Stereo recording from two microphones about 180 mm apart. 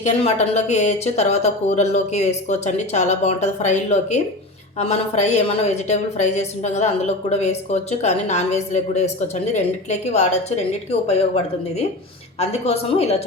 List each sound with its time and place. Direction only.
0.0 s a woman's voice: 40° left (ahead or behind)
12.4 s a woman's voice: 35° left (ahead or behind)